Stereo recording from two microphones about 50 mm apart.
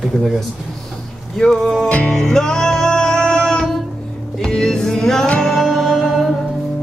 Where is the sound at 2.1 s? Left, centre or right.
Centre.